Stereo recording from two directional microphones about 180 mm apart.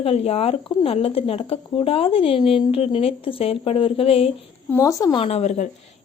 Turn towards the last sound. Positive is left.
turn(degrees=35)  # may be behind; listen again after turning